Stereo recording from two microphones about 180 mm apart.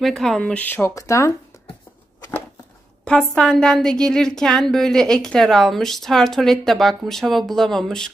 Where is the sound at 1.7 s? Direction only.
20° left (ahead or behind).